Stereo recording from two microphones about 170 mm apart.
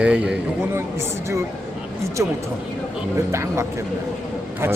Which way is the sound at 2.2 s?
15° right (ahead or behind).